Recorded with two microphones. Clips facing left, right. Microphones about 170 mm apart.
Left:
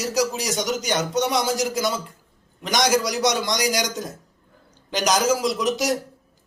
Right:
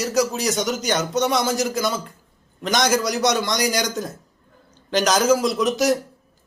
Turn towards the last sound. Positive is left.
turn(degrees=15)  # may be behind; listen again after turning